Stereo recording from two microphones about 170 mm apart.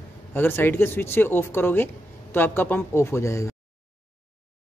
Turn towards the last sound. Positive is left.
turn(degrees=15)  # may be behind; listen again after turning